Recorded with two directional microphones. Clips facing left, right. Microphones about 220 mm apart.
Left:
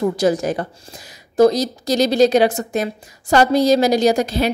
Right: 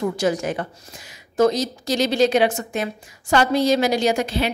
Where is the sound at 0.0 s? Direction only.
35° left (ahead or behind).